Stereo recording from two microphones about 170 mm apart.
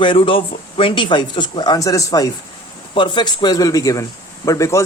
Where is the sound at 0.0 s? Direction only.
30° left (ahead or behind).